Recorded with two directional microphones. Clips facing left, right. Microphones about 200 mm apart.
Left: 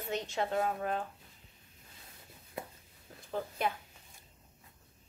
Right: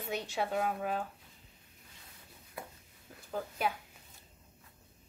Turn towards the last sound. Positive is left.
turn(degrees=-5)  # may be behind; listen again after turning